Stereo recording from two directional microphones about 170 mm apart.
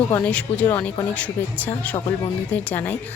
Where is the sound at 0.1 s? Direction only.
10° left (ahead or behind).